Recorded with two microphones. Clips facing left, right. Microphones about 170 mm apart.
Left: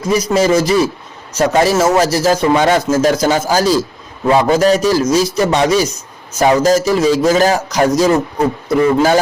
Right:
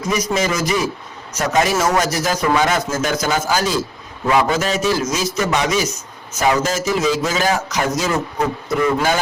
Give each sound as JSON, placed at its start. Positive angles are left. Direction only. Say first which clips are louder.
{"t": 0.1, "sound": "a man's voice", "louder": "left 8 dB", "side_deg": 30}